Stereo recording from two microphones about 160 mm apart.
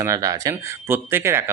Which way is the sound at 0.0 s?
20° right (ahead or behind).